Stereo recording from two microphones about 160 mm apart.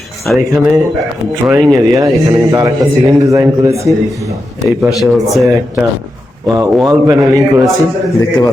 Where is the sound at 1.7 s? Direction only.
20° right (ahead or behind).